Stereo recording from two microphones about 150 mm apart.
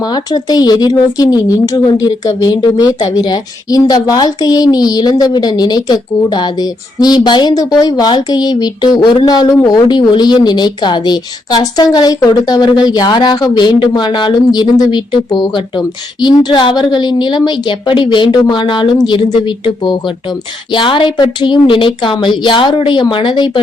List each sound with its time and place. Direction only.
0.0 s a woman's voice: 30° left (ahead or behind)